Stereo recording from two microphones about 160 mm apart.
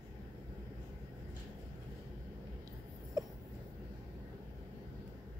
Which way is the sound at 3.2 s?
20° right (ahead or behind).